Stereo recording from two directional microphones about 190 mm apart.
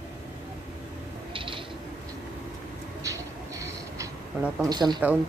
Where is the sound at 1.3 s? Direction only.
25° right (ahead or behind).